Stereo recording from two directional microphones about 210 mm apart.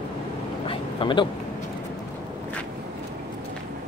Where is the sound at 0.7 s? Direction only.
25° left (ahead or behind).